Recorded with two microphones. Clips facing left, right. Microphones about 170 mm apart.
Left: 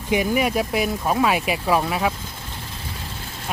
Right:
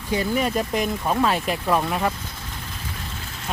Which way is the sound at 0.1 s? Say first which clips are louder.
Left 2 dB; 10° left (ahead or behind).